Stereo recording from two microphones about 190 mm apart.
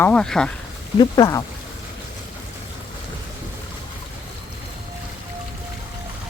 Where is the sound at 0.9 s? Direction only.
20° left (ahead or behind).